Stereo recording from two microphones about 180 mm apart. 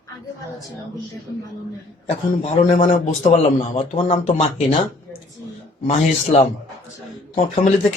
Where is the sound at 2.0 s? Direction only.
35° left (ahead or behind).